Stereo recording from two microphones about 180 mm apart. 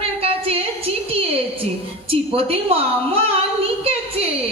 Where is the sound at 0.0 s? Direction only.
35° right (ahead or behind).